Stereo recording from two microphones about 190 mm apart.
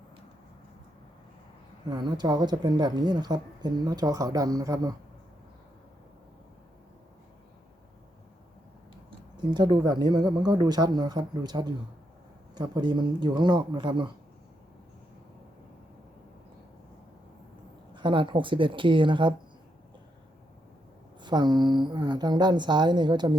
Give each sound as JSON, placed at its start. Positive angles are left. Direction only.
{"t": 1.9, "sound": "speech", "side_deg": -20}
{"t": 9.4, "sound": "speech", "side_deg": -25}
{"t": 17.9, "sound": "speech", "side_deg": -25}
{"t": 21.2, "sound": "speech", "side_deg": -25}